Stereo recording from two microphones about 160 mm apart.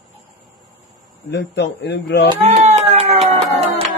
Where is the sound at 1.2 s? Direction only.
90° left.